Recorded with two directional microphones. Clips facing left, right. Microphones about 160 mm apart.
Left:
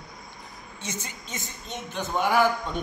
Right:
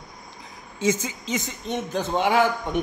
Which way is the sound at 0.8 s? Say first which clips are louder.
Right 14 dB; 90° right.